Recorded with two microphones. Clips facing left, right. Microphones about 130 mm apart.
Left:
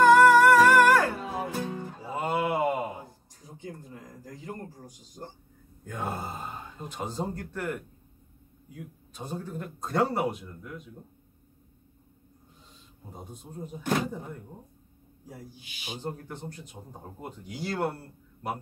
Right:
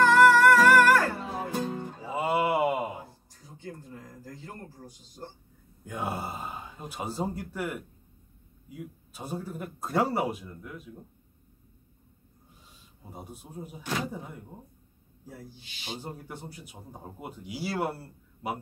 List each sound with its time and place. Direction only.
0.2 s music: 15° left (ahead or behind)
1.5 s music: 20° right (ahead or behind)
2.0 s mantra: 5° right (ahead or behind)
3.6 s a sound: 20° left (ahead or behind)
5.9 s speech: 10° right (ahead or behind)
13.1 s speech: 10° right (ahead or behind)
15.2 s speech: 15° left (ahead or behind)
16.0 s speech: 10° right (ahead or behind)